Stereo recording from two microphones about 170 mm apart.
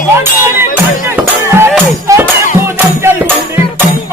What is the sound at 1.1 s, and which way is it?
Music, 15° right (ahead or behind).